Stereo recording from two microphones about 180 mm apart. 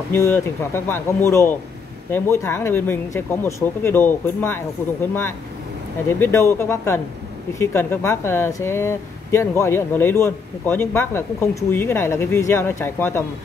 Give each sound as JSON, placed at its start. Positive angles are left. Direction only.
{"t": 0.1, "sound": "speech", "side_deg": 10}
{"t": 6.0, "sound": "speech", "side_deg": 15}